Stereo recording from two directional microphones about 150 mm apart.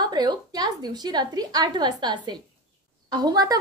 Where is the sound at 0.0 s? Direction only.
30° right (ahead or behind).